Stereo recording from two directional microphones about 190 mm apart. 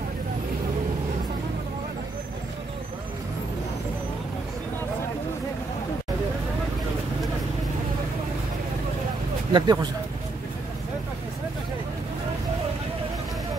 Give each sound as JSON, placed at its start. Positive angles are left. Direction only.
{"t": 9.5, "sound": "speech", "side_deg": -20}